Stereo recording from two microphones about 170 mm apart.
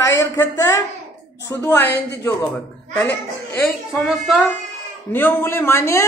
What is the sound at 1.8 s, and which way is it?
Speech, 90° left.